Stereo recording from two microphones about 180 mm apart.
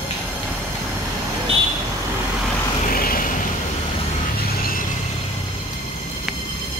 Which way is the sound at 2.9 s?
55° left (ahead or behind).